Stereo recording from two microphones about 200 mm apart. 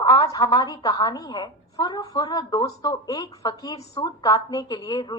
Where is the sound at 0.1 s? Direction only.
20° left (ahead or behind).